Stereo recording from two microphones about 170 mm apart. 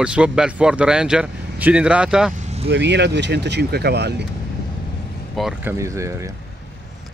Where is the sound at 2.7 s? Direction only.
90° right; by 4.1 s 75° right (ahead or behind).